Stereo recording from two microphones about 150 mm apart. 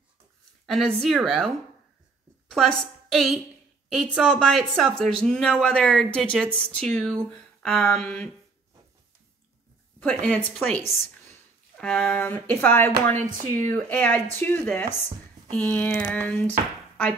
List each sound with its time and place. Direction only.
0.7 s a woman's voice: centre (ahead or behind)
9.9 s speech: 10° left (ahead or behind)
13.1 s speech: 55° right (ahead or behind)
13.7 s speech: 10° left (ahead or behind)